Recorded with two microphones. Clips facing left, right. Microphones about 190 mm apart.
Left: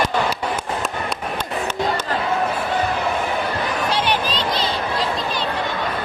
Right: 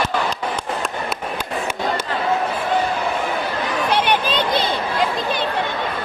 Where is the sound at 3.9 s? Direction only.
55° right (ahead or behind).